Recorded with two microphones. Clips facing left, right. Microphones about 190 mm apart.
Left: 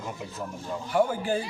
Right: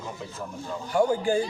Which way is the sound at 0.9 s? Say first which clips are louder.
Right 2 dB; 5° left (ahead or behind).